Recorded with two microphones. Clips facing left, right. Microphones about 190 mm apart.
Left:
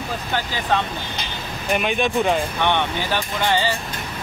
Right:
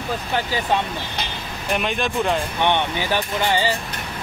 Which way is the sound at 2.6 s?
15° right (ahead or behind).